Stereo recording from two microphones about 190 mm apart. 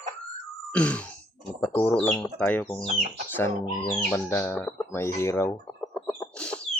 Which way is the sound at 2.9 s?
35° right (ahead or behind).